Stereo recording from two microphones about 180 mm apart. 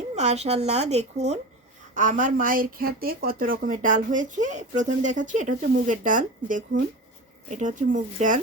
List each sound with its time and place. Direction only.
0.2 s a woman's voice: 40° right (ahead or behind)